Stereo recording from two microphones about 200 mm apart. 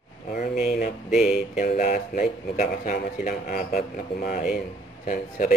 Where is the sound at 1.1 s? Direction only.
Centre (ahead or behind).